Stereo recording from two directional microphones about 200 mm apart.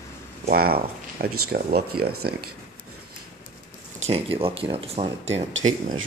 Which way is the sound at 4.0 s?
30° right (ahead or behind).